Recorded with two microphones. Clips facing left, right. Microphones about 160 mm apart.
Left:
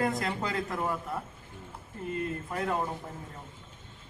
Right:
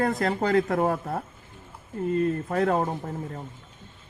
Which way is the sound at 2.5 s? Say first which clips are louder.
Right 5 dB; 55° right (ahead or behind).